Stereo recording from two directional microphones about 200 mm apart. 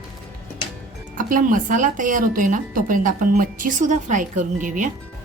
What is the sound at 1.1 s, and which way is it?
Speech, 40° right (ahead or behind).